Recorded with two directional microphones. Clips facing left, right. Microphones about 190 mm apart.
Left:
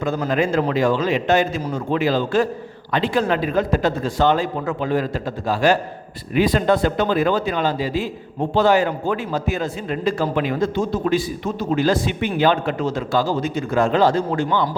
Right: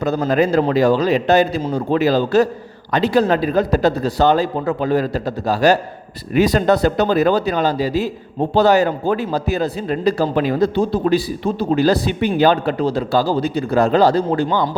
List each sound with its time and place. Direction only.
0.0 s speech: 35° right (ahead or behind)